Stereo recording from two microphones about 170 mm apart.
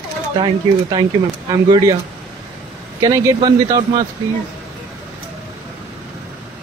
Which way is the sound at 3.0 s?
25° right (ahead or behind).